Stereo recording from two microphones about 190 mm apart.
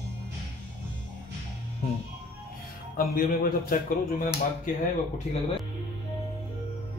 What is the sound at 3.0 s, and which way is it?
A man's voice, 50° left (ahead or behind).